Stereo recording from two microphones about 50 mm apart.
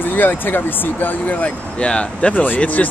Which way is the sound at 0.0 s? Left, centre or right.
Left.